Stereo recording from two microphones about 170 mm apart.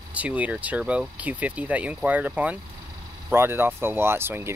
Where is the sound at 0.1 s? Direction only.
10° right (ahead or behind).